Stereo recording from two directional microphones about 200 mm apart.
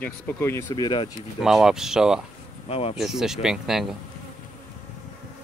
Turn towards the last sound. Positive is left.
turn(degrees=0)  # may be behind; listen again after turning